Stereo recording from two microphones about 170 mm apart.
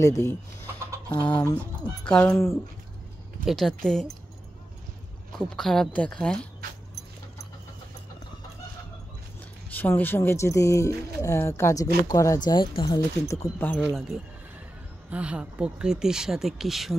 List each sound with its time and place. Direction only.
0.0 s speech: 15° left (ahead or behind)
5.6 s speech: 5° left (ahead or behind)
9.7 s speech: 10° left (ahead or behind)
13.7 s speech: centre (ahead or behind)